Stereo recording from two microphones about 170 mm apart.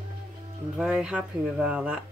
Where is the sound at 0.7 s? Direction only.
5° right (ahead or behind).